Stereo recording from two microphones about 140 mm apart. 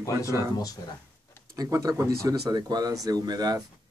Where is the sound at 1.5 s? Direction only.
25° right (ahead or behind).